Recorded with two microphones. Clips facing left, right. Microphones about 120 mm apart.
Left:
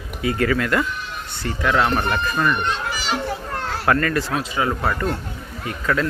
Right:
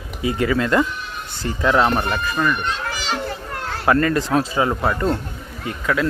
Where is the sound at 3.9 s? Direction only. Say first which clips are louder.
Right 3 dB; 20° right (ahead or behind).